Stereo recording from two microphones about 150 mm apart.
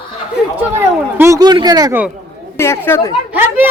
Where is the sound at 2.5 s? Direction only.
15° left (ahead or behind).